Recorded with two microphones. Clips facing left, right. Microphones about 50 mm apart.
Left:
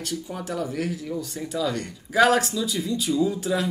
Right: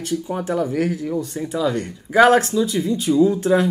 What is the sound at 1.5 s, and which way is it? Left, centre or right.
Speech, centre.